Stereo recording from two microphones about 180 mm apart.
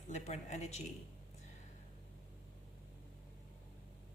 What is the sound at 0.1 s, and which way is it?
Speech, 40° left (ahead or behind).